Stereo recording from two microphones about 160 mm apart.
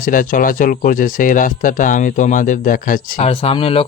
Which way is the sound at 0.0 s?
60° left (ahead or behind).